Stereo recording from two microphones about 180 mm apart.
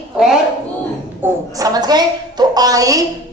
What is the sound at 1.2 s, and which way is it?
A woman's voice, 20° right (ahead or behind).